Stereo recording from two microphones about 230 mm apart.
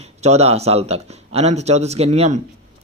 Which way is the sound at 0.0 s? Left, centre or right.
Right.